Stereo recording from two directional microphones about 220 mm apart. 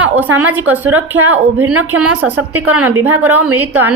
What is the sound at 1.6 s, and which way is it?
Speech, 90° right.